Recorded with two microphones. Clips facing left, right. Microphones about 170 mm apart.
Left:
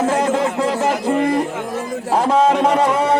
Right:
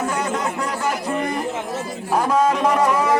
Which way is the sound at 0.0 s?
25° left (ahead or behind).